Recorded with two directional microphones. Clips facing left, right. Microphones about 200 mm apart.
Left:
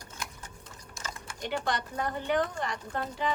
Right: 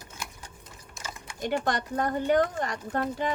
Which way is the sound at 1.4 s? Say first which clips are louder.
Right 4 dB; 45° right (ahead or behind).